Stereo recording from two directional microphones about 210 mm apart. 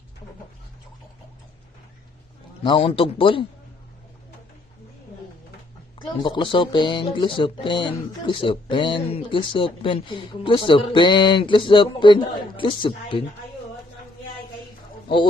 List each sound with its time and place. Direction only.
2.6 s speech: 25° left (ahead or behind)
6.0 s speech: 20° left (ahead or behind)